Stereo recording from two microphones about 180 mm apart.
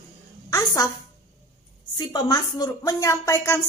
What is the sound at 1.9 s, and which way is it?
A woman's voice, 20° left (ahead or behind).